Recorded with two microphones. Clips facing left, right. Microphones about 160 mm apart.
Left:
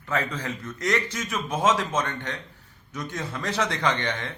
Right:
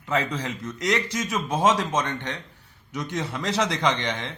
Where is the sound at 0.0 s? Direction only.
20° right (ahead or behind).